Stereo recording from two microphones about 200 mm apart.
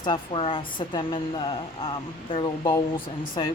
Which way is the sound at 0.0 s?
25° left (ahead or behind).